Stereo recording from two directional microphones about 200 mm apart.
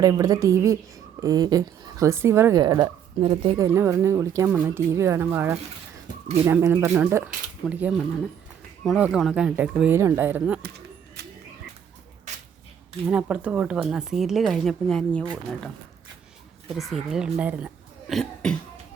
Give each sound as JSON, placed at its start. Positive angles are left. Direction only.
{"t": 0.0, "sound": "a woman's voice", "side_deg": -15}
{"t": 3.6, "sound": "a woman's voice", "side_deg": -15}
{"t": 11.2, "sound": "frog", "side_deg": -55}
{"t": 12.3, "sound": "a sound", "side_deg": -35}
{"t": 13.1, "sound": "speech", "side_deg": -5}
{"t": 16.6, "sound": "speech", "side_deg": 0}
{"t": 18.1, "sound": "cough", "side_deg": 0}